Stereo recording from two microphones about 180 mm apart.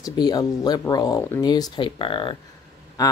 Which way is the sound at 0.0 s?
20° left (ahead or behind).